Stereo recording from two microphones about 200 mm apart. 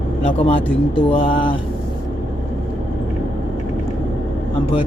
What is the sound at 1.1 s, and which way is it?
Speech, 25° left (ahead or behind).